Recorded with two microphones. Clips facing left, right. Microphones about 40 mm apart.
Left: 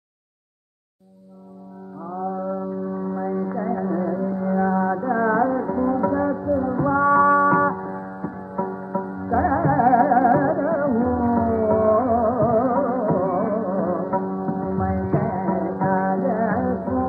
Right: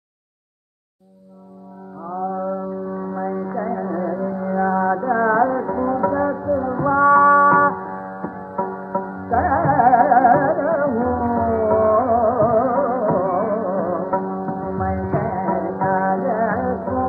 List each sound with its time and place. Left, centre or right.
2.9 s music: centre